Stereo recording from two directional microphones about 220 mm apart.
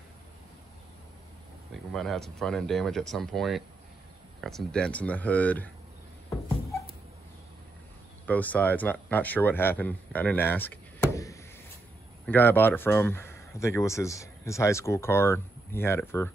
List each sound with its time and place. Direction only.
1.9 s speech: centre (ahead or behind)
8.3 s speech: 5° left (ahead or behind)